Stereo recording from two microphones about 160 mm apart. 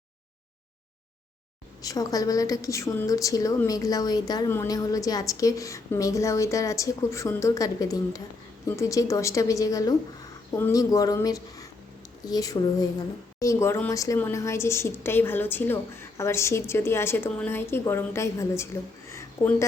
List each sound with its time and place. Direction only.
1.8 s a woman's voice: 20° left (ahead or behind)